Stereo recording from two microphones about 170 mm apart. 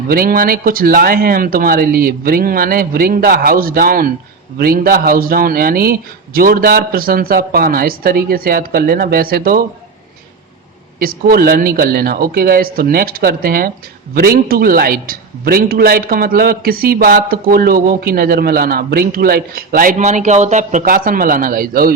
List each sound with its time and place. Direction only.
0.1 s a man's voice: 60° right (ahead or behind)
11.0 s a man's voice: 60° right (ahead or behind)